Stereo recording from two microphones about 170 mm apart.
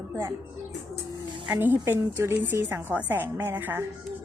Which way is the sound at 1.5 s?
10° right (ahead or behind).